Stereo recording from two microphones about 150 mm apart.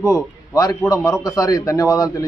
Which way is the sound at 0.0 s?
25° left (ahead or behind).